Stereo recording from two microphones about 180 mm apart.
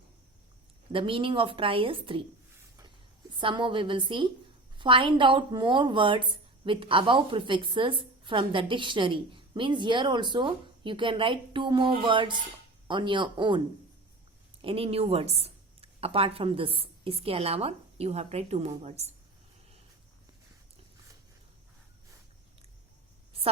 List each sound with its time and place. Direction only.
0.9 s a woman's voice: 30° right (ahead or behind)
3.3 s a woman's voice: 25° right (ahead or behind)
14.6 s speech: 30° right (ahead or behind)